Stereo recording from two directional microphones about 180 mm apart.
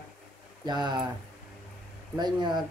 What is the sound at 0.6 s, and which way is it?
Speech, 25° right (ahead or behind).